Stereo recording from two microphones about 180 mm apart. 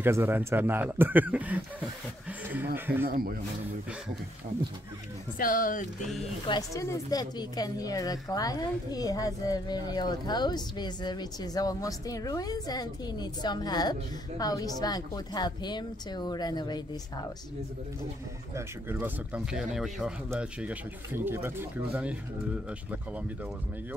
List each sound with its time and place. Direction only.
0.0 s speech: 10° right (ahead or behind)
3.1 s speech: 55° right (ahead or behind)
5.4 s speech: 50° left (ahead or behind)
6.4 s speech: 20° left (ahead or behind)
18.5 s speech: 10° right (ahead or behind)